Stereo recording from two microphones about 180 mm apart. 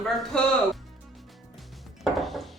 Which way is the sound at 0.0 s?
Centre (ahead or behind).